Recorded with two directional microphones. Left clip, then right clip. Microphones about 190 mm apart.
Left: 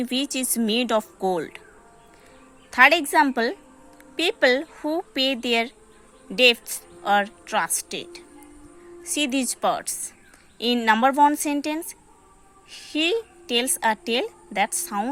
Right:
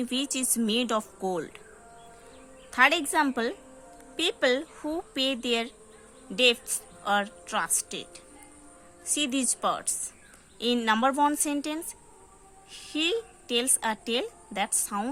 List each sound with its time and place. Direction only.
0.0 s a woman's voice: 25° left (ahead or behind)
2.6 s a woman's voice: 25° left (ahead or behind)